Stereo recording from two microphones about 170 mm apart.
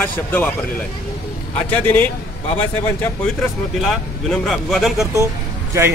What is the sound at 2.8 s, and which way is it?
Speech, 15° left (ahead or behind).